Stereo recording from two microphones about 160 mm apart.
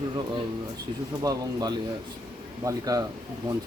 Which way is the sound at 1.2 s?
25° right (ahead or behind).